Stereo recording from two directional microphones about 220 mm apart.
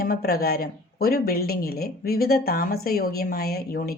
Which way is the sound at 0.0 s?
45° left (ahead or behind).